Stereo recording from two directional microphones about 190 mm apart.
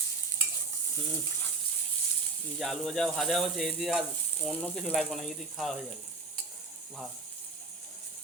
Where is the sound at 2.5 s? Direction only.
Centre (ahead or behind).